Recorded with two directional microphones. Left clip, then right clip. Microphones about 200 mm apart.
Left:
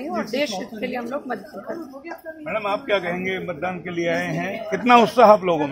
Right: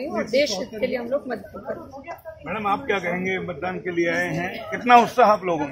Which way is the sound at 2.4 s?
45° left (ahead or behind).